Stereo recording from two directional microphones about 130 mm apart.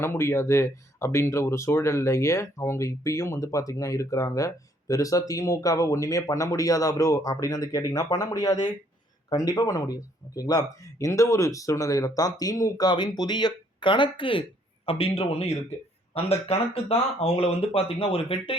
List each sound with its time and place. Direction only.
0.0 s speech: 20° left (ahead or behind); by 18.5 s 45° left (ahead or behind)